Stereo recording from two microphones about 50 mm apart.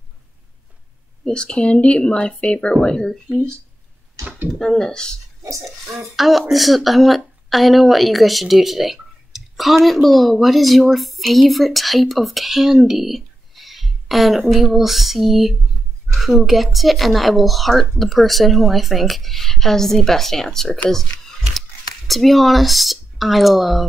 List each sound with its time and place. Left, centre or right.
1.2 s speech: centre
4.6 s speech: centre
5.9 s a woman's voice: centre